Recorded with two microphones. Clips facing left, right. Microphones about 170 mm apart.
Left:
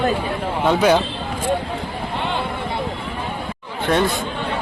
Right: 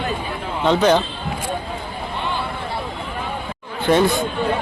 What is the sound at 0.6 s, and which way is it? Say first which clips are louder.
Speech: even; 10° left (ahead or behind).